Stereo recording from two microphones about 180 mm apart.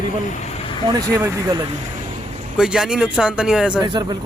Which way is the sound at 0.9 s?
20° right (ahead or behind).